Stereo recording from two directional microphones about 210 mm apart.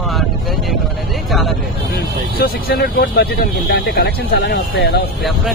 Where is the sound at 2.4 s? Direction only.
50° left (ahead or behind).